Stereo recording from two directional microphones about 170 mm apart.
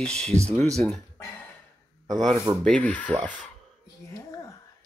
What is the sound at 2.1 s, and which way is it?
Speech, centre (ahead or behind).